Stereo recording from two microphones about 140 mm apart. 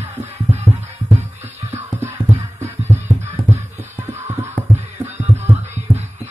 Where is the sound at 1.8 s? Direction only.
15° right (ahead or behind).